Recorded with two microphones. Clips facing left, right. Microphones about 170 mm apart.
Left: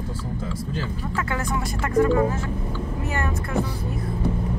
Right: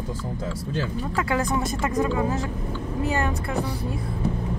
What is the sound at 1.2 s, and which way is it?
Speech, 15° right (ahead or behind).